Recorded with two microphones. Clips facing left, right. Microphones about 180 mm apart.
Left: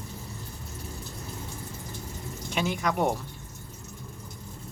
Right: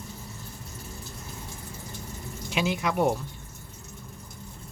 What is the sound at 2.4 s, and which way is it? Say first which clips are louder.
Speech: right 1 dB; 5° right (ahead or behind).